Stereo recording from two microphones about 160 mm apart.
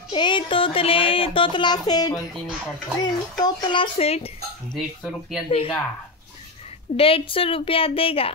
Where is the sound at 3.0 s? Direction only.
25° left (ahead or behind).